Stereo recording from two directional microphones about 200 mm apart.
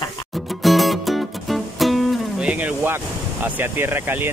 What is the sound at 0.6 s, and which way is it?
Music, centre (ahead or behind).